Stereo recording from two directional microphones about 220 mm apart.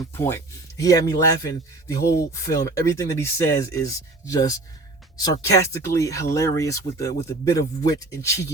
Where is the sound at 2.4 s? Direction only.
15° left (ahead or behind).